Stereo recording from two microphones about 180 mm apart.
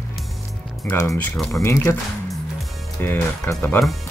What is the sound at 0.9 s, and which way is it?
Speech, 15° left (ahead or behind).